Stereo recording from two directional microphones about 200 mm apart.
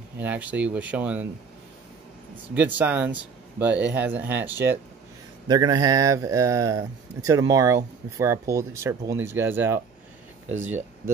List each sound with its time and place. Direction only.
0.2 s speech: 5° right (ahead or behind)
2.5 s speech: 10° right (ahead or behind)